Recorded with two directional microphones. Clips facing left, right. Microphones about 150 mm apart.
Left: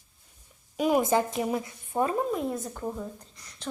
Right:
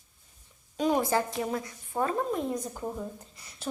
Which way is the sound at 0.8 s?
10° left (ahead or behind).